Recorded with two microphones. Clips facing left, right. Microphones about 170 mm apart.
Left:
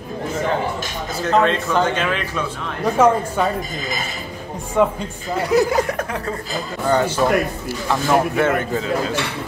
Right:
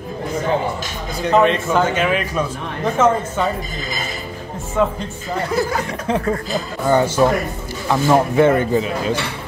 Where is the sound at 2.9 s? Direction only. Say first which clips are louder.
Left 1 dB; 10° left (ahead or behind).